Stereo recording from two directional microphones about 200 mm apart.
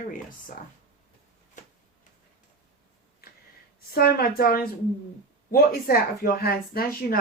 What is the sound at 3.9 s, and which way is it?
Speech, 50° left (ahead or behind).